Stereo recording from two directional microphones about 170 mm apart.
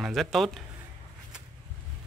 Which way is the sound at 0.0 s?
Centre (ahead or behind).